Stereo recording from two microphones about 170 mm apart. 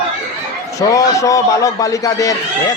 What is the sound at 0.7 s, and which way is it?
A child's voice, 20° left (ahead or behind).